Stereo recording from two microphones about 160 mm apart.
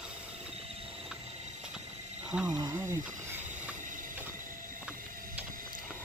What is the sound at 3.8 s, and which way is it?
Train, 55° right (ahead or behind).